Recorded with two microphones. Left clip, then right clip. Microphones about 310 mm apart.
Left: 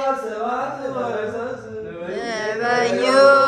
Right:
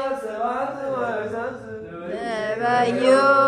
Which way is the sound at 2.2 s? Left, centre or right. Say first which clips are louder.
Even; centre.